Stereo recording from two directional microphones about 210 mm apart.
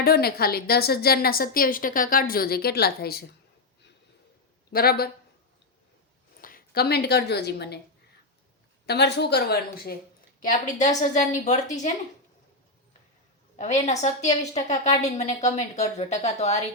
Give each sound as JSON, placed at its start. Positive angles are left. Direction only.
{"t": 0.0, "sound": "a woman's voice", "side_deg": 50}
{"t": 4.7, "sound": "a woman's voice", "side_deg": 45}
{"t": 6.4, "sound": "a woman's voice", "side_deg": 45}
{"t": 8.9, "sound": "a woman's voice", "side_deg": 55}
{"t": 10.4, "sound": "a woman's voice", "side_deg": 35}
{"t": 13.8, "sound": "a woman's voice", "side_deg": 35}